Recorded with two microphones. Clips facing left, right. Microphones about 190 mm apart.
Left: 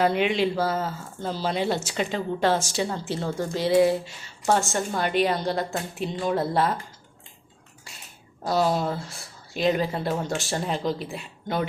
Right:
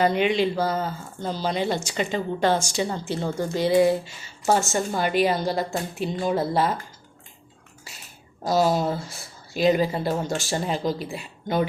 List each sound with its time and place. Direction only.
0.0 s speech: centre (ahead or behind)
7.9 s speech: centre (ahead or behind)